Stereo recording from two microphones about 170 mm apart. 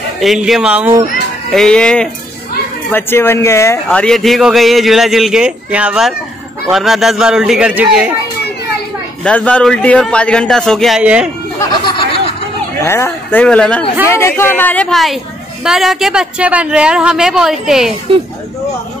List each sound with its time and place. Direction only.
0.2 s speech: centre (ahead or behind)
1.5 s speech: 5° left (ahead or behind)
9.2 s speech: 5° left (ahead or behind)
11.8 s a sound: 30° left (ahead or behind)
12.8 s speech: 15° left (ahead or behind); by 17.9 s 5° right (ahead or behind)